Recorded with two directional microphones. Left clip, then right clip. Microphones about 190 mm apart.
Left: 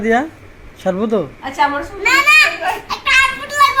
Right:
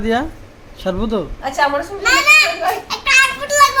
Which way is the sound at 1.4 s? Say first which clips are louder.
Right 3 dB; 35° right (ahead or behind).